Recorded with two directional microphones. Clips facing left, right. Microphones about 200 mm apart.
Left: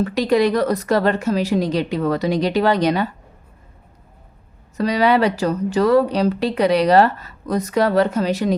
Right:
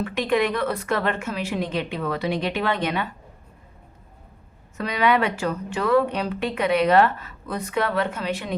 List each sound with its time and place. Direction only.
0.0 s speech: 35° left (ahead or behind)
4.8 s speech: 35° left (ahead or behind)